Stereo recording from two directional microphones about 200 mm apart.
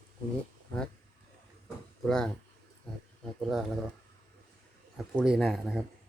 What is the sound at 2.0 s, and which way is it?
Speech, centre (ahead or behind).